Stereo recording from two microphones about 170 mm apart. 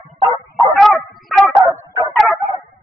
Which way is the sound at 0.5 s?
Centre (ahead or behind).